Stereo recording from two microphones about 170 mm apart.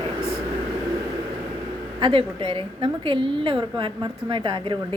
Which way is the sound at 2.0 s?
30° right (ahead or behind).